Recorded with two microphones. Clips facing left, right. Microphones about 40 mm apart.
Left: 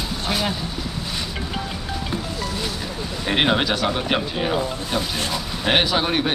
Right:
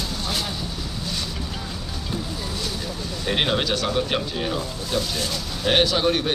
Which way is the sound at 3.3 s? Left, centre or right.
Centre.